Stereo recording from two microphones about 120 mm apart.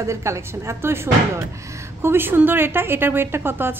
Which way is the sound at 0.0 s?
25° right (ahead or behind).